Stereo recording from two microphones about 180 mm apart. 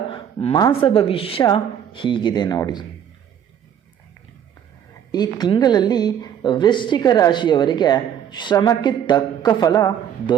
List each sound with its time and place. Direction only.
0.1 s a sound: 35° left (ahead or behind)
0.5 s a woman's voice: 25° left (ahead or behind)
5.1 s a woman's voice: 25° left (ahead or behind)